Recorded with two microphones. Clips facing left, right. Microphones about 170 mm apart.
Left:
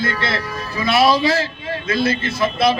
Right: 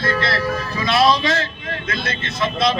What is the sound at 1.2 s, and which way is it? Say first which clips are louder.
A man's voice: left 3 dB; 30° left (ahead or behind).